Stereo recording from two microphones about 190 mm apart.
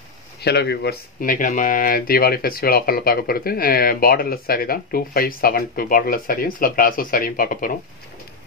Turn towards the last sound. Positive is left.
turn(degrees=45)  # may be behind; listen again after turning